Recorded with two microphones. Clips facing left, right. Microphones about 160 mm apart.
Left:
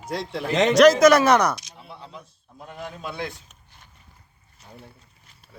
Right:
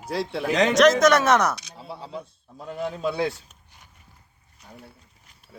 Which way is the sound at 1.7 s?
35° right (ahead or behind).